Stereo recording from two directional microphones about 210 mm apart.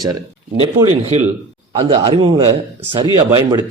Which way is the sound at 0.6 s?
25° right (ahead or behind).